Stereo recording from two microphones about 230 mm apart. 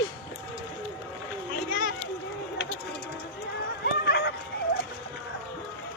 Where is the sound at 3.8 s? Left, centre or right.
Left.